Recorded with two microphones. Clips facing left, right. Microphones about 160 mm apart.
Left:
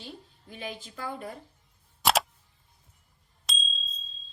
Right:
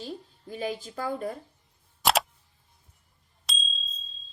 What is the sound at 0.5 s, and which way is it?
Speech, 40° right (ahead or behind).